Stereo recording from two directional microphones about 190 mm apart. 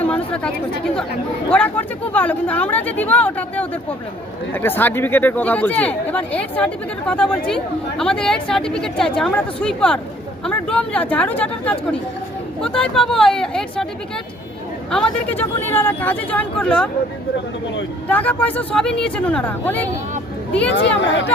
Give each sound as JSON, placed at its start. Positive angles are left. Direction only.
{"t": 0.0, "sound": "speech", "side_deg": 5}
{"t": 14.8, "sound": "speech", "side_deg": 5}
{"t": 18.1, "sound": "speech", "side_deg": 10}
{"t": 20.7, "sound": "speech", "side_deg": 70}